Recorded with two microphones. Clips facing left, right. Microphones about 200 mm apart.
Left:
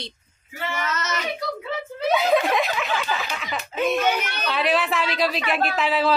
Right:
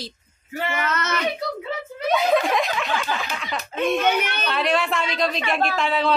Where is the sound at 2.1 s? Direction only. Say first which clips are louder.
Even; centre (ahead or behind).